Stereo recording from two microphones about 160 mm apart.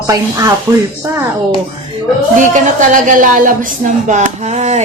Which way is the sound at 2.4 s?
50° right (ahead or behind).